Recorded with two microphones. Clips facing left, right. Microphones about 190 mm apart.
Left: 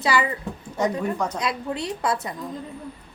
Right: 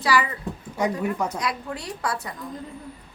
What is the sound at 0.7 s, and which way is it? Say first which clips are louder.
Speech: left 1 dB; 10° right (ahead or behind).